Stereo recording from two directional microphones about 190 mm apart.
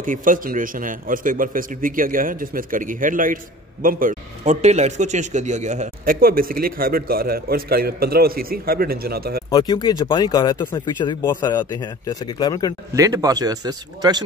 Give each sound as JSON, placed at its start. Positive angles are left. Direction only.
{"t": 0.0, "sound": "a man's voice", "side_deg": -45}
{"t": 6.1, "sound": "a man's voice", "side_deg": -50}
{"t": 9.5, "sound": "speech", "side_deg": 25}
{"t": 12.9, "sound": "a man's voice", "side_deg": -15}